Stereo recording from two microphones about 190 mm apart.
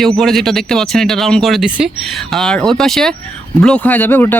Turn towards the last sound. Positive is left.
turn(degrees=10)  # may be behind; listen again after turning